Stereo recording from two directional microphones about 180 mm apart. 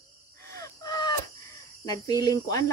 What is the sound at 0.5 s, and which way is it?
Crow, 20° left (ahead or behind).